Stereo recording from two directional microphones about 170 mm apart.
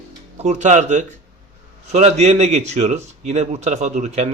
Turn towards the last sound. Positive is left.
turn(degrees=-45)  # may be behind; listen again after turning